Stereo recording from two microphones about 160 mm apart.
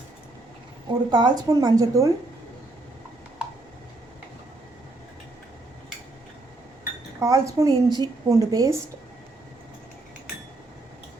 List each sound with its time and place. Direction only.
0.9 s speech: 30° right (ahead or behind)
7.2 s speech: 20° right (ahead or behind)